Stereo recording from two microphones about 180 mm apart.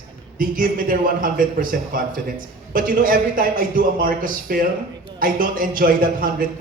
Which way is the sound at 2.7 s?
50° right (ahead or behind).